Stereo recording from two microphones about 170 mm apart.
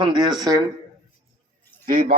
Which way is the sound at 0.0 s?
25° right (ahead or behind).